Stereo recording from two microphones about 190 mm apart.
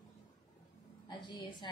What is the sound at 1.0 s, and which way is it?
Speech, 25° left (ahead or behind).